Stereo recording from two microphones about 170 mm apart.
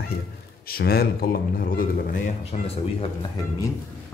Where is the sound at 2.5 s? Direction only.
45° left (ahead or behind).